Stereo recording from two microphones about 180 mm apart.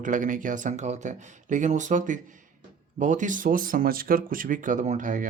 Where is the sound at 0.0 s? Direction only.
45° right (ahead or behind).